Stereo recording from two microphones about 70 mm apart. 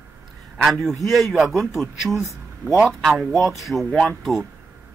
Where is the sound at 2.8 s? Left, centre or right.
Centre.